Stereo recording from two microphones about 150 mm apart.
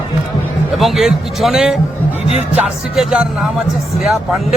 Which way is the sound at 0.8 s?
Centre (ahead or behind).